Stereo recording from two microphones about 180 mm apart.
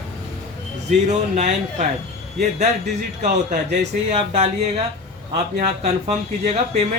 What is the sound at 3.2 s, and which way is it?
Speech, 40° right (ahead or behind).